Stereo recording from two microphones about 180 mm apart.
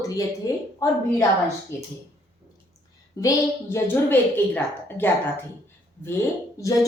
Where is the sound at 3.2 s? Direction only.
15° left (ahead or behind).